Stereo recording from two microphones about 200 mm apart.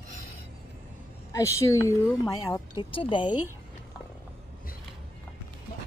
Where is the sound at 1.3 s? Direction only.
15° left (ahead or behind).